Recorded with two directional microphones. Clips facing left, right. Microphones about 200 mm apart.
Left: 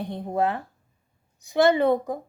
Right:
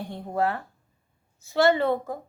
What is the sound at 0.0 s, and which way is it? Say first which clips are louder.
A woman's voice: left 2 dB; 20° left (ahead or behind).